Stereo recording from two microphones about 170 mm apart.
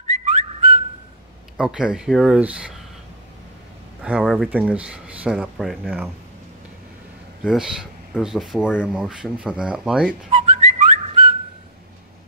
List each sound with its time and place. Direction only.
0.1 s whistling: 40° right (ahead or behind)
1.6 s speech: 5° right (ahead or behind)
4.0 s speech: 5° right (ahead or behind)
7.4 s speech: 5° right (ahead or behind)
10.3 s whistling: 40° right (ahead or behind)